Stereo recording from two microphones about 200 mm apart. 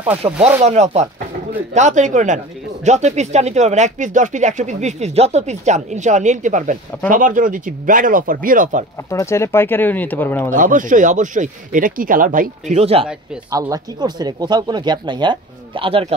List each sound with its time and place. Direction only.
0.2 s speech: 20° right (ahead or behind)
0.7 s speech: 35° right (ahead or behind)
9.1 s speech: 15° left (ahead or behind)
10.5 s speech: 40° right (ahead or behind)
13.5 s speech: 20° right (ahead or behind)